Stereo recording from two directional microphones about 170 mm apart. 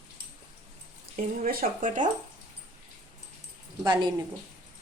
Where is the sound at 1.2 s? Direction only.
50° right (ahead or behind).